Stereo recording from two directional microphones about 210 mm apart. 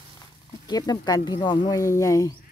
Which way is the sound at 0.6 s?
20° left (ahead or behind).